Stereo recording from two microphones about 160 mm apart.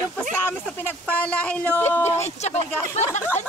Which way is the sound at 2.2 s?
45° left (ahead or behind).